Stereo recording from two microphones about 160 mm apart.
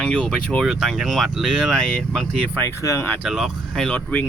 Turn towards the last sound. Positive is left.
turn(degrees=10)  # may be behind; listen again after turning